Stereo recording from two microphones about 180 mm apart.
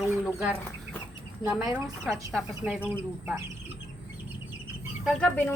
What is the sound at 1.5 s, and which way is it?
Speech, 5° right (ahead or behind).